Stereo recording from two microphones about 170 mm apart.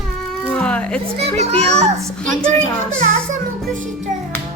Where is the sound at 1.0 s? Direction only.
40° right (ahead or behind).